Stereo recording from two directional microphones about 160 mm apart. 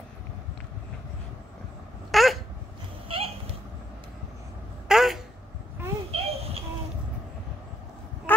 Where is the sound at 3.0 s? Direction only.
35° right (ahead or behind).